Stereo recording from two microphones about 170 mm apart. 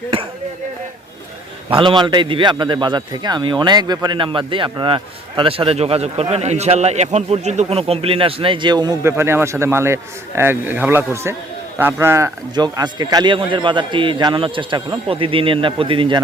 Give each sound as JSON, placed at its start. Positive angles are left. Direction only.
{"t": 1.8, "sound": "a man's voice", "side_deg": -30}